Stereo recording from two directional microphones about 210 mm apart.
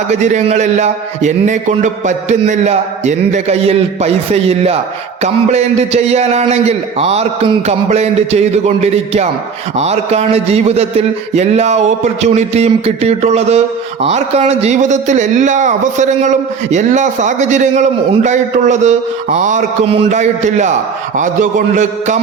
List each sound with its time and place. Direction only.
0.1 s a man's voice: 35° right (ahead or behind)
21.8 s a man's voice: 35° right (ahead or behind)